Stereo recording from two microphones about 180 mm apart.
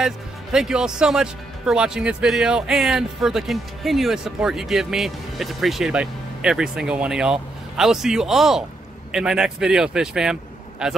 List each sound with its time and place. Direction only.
0.0 s speech: 5° right (ahead or behind)